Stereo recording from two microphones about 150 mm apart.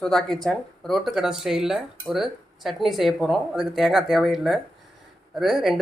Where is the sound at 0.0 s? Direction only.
5° left (ahead or behind).